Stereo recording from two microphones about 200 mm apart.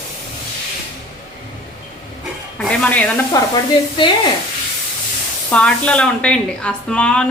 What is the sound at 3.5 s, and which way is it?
Sizzle, 25° left (ahead or behind).